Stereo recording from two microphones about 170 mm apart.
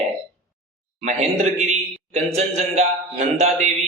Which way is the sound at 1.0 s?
40° right (ahead or behind).